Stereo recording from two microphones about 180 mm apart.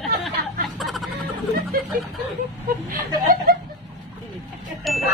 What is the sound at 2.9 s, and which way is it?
Chuckle, 50° right (ahead or behind).